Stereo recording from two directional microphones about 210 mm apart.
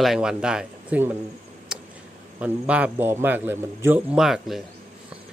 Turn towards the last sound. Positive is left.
turn(degrees=0)  # may be behind; listen again after turning